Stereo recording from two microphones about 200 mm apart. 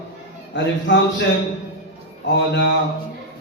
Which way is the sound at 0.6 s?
60° left (ahead or behind).